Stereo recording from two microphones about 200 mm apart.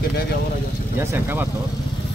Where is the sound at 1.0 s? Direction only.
10° right (ahead or behind).